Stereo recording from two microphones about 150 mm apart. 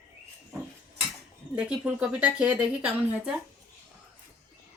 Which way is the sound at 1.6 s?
5° right (ahead or behind).